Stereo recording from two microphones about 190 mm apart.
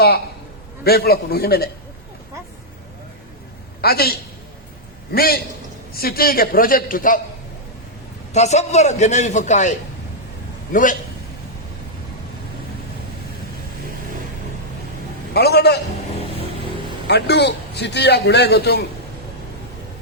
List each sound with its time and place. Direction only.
0.9 s a man's voice: 55° left (ahead or behind)
3.8 s a man's voice: 55° left (ahead or behind)
5.1 s a man's voice: 55° left (ahead or behind)
8.3 s a man's voice: 35° left (ahead or behind)
15.3 s a man's voice: 60° left (ahead or behind)
17.1 s a man's voice: 65° left (ahead or behind)